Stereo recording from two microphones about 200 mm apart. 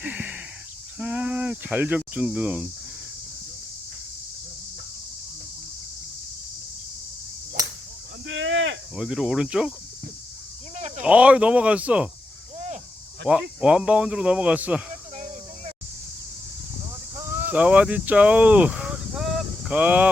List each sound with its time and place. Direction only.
0.0 s a sound: 5° right (ahead or behind)
0.9 s speech: 5° right (ahead or behind)
8.3 s speech: 75° right (ahead or behind)
9.0 s speech: 5° right (ahead or behind)
10.8 s a sound: 35° right (ahead or behind)
11.0 s speech: 5° right (ahead or behind)
12.5 s cricket: 35° right (ahead or behind)
13.2 s speech: 5° right (ahead or behind)
17.2 s a sound: 5° right (ahead or behind)